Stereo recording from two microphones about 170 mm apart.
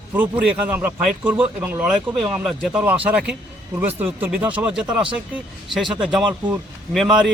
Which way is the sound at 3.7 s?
10° right (ahead or behind).